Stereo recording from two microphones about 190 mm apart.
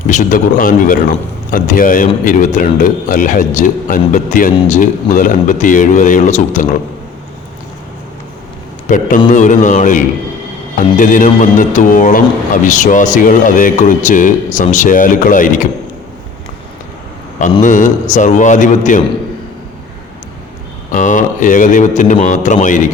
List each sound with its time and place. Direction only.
0.1 s a man's voice: 40° left (ahead or behind)
8.9 s a man's voice: 40° left (ahead or behind)
17.6 s a man's voice: 40° left (ahead or behind)
20.9 s a man's voice: 40° left (ahead or behind)